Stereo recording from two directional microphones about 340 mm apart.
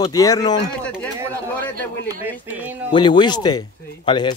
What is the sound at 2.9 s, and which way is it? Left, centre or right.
Speech, centre.